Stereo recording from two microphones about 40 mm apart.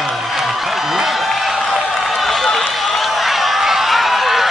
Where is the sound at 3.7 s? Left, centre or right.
Centre.